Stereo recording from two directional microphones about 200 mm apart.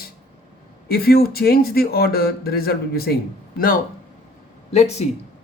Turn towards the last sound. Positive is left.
turn(degrees=35)  # may be behind; listen again after turning